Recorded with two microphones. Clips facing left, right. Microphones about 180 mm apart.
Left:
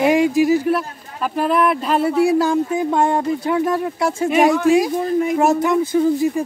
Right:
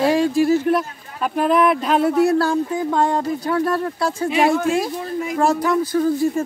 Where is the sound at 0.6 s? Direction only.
Centre (ahead or behind); by 4.2 s 25° left (ahead or behind).